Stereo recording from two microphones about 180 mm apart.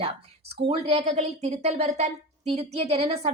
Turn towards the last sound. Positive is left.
turn(degrees=-35)  # may be behind; listen again after turning